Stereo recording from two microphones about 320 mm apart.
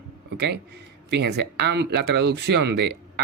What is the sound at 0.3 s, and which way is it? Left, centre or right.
A man's voice, right.